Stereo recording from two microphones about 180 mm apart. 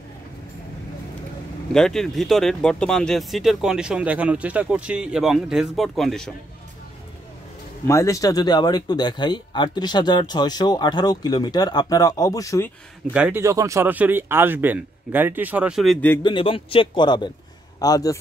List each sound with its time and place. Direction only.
1.7 s speech: 5° left (ahead or behind)
7.8 s speech: 15° left (ahead or behind)
13.1 s speech: 10° right (ahead or behind)
16.2 s speech: 25° left (ahead or behind)